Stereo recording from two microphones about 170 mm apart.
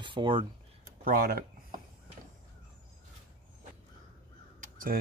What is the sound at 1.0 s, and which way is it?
Speech, 55° right (ahead or behind).